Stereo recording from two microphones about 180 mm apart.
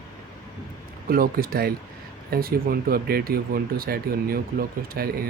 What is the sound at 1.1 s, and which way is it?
Speech, 55° right (ahead or behind).